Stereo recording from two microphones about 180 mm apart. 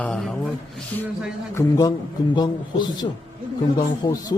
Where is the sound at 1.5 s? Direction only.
20° left (ahead or behind).